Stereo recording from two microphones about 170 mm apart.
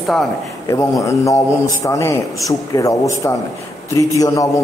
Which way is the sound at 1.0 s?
20° left (ahead or behind).